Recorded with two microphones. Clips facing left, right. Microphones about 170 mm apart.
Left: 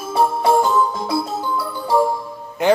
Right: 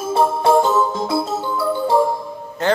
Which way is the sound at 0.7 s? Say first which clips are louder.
Right 1 dB; 25° right (ahead or behind).